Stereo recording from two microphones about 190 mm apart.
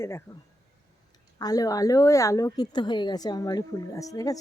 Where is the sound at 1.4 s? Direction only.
20° left (ahead or behind).